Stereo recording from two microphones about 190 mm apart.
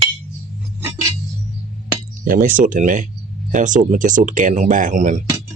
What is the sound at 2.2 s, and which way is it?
Speech, 45° right (ahead or behind).